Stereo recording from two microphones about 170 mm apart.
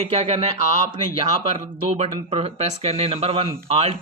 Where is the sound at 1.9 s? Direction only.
35° right (ahead or behind).